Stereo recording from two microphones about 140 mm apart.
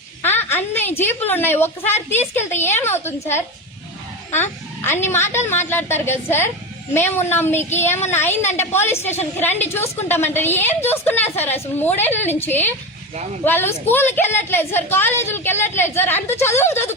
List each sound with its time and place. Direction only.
0.2 s a woman's voice: 15° left (ahead or behind)